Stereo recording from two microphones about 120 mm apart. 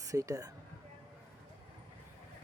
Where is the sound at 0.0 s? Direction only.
30° right (ahead or behind).